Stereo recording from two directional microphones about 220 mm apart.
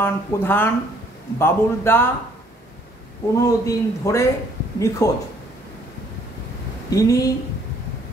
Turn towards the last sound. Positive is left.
turn(degrees=15)  # may be behind; listen again after turning